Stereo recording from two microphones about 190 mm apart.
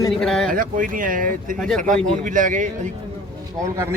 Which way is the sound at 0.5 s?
45° right (ahead or behind).